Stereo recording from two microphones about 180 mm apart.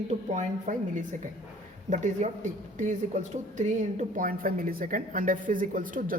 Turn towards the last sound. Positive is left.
turn(degrees=-50)  # may be behind; listen again after turning